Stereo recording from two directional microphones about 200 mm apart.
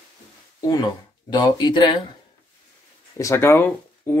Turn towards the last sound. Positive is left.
turn(degrees=10)  # may be behind; listen again after turning